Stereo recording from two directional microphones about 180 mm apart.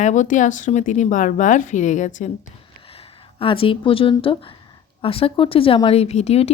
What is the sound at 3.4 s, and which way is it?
A woman's voice, 30° left (ahead or behind).